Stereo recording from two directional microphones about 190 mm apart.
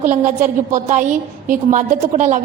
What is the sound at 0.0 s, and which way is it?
A woman's voice, 40° right (ahead or behind).